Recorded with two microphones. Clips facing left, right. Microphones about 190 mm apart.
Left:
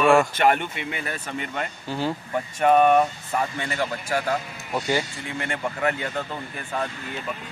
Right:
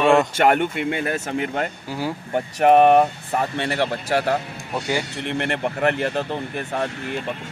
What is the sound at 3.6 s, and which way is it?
Speech, 65° right (ahead or behind).